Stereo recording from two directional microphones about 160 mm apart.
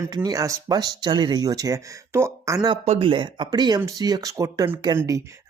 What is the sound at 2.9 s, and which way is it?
Speech, 35° right (ahead or behind).